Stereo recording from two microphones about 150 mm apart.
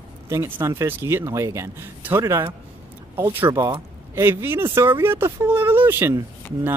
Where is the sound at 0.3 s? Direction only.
15° right (ahead or behind).